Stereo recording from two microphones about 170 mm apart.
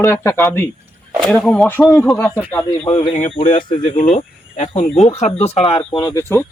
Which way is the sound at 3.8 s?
50° left (ahead or behind).